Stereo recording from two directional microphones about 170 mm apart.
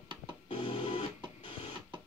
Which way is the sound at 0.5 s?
35° left (ahead or behind).